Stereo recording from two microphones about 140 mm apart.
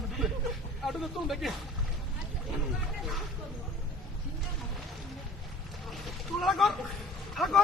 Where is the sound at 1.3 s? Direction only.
Centre (ahead or behind).